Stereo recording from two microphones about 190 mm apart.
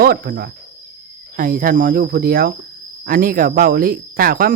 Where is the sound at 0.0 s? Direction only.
55° right (ahead or behind).